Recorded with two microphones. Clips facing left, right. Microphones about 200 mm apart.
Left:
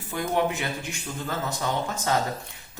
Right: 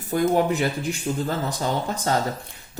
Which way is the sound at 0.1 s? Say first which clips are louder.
Right 6 dB; 35° right (ahead or behind).